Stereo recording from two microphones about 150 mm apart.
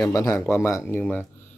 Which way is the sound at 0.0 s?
20° left (ahead or behind).